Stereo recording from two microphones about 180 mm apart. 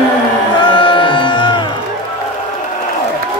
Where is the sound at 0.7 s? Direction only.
25° left (ahead or behind).